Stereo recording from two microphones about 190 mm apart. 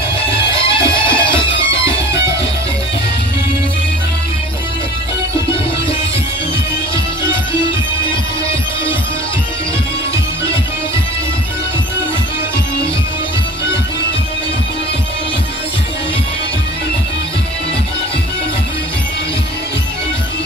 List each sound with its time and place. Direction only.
0.9 s music: 25° left (ahead or behind)